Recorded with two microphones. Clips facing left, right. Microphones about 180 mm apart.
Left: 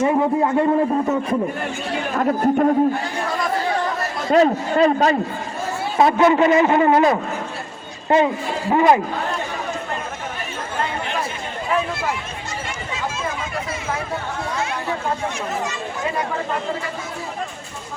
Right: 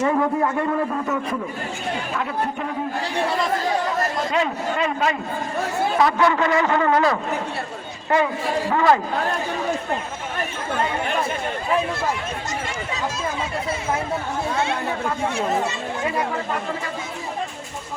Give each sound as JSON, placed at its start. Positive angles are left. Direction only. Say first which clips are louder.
{"t": 0.0, "sound": "a man's voice", "louder": "left 2 dB", "side_deg": 20}
{"t": 2.1, "sound": "speech", "louder": "left 12 dB", "side_deg": 45}
{"t": 4.3, "sound": "a man's voice", "louder": "left 7 dB", "side_deg": 40}
{"t": 6.0, "sound": "a man's voice", "louder": "left 5 dB", "side_deg": 25}